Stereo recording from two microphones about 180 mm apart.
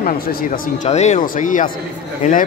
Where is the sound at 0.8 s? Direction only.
40° left (ahead or behind).